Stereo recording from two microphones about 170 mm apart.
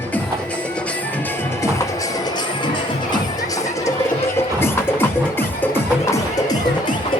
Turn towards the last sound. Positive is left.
turn(degrees=15)  # may be behind; listen again after turning